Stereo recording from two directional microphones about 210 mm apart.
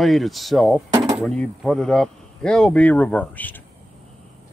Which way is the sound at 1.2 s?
5° left (ahead or behind).